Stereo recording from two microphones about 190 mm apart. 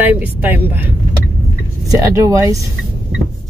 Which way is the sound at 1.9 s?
20° right (ahead or behind).